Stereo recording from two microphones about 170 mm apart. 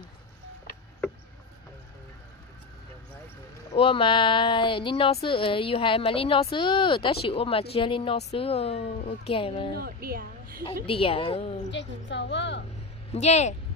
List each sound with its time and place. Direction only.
3.7 s speech: 30° left (ahead or behind)
9.8 s speech: 60° right (ahead or behind)
10.7 s speech: 35° left (ahead or behind)
11.7 s a woman's voice: 90° left
13.1 s speech: 40° left (ahead or behind)